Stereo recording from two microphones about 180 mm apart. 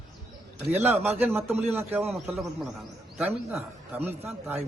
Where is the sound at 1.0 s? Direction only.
10° right (ahead or behind).